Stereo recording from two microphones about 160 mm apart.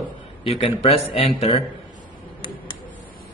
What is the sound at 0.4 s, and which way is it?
Speech, 35° left (ahead or behind).